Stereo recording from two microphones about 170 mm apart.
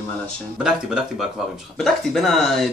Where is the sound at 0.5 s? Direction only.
5° right (ahead or behind).